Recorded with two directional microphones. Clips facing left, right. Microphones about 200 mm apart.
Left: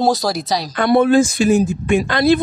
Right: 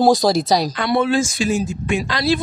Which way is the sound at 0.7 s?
50° left (ahead or behind).